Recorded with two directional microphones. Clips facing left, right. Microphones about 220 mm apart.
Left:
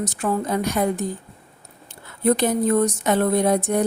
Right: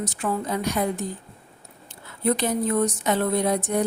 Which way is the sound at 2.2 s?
50° left (ahead or behind).